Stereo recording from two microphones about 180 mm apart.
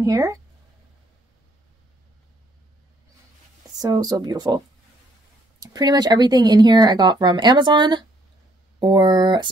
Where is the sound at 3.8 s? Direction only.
20° right (ahead or behind).